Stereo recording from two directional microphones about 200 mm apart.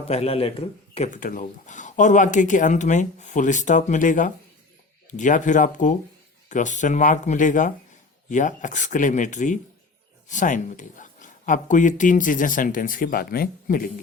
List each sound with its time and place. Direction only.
0.1 s speech: 30° left (ahead or behind); by 13.9 s 45° left (ahead or behind)